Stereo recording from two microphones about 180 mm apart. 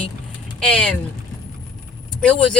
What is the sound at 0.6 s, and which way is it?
Speech, 5° left (ahead or behind).